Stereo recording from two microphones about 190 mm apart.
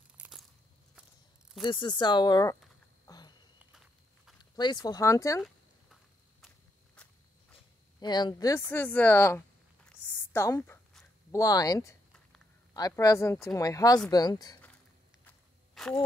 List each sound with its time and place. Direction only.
0.2 s crunch: centre (ahead or behind)
1.6 s speech: 25° left (ahead or behind)
3.1 s a sound: 20° left (ahead or behind)
4.4 s speech: 25° left (ahead or behind)
7.0 s walk: 5° left (ahead or behind)
8.0 s a woman's voice: 25° left (ahead or behind)
10.0 s a sound: 15° left (ahead or behind)
11.3 s a woman's voice: 20° left (ahead or behind)
15.2 s walk: 5° left (ahead or behind)